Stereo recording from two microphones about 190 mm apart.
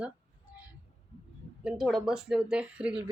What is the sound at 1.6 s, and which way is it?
A woman's voice, centre (ahead or behind).